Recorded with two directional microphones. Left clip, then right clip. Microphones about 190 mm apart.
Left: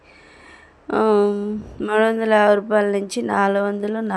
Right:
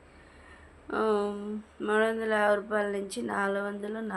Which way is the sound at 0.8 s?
40° left (ahead or behind).